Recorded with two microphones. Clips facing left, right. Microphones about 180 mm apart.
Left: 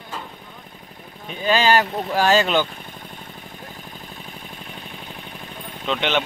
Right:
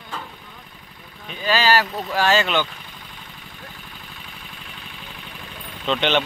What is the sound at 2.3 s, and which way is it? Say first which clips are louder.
Speech: left 3 dB; 40° left (ahead or behind).